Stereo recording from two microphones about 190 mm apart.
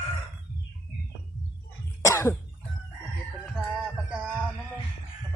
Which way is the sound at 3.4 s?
Centre (ahead or behind).